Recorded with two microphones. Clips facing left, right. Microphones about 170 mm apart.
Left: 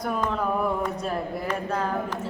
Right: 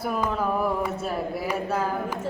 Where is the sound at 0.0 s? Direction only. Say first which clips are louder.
Even; 5° right (ahead or behind).